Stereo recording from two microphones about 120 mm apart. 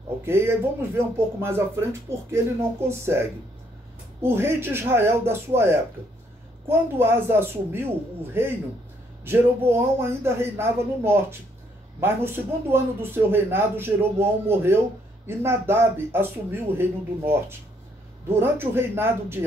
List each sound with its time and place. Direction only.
0.2 s a man's voice: 20° right (ahead or behind)
4.2 s a man's voice: 20° right (ahead or behind)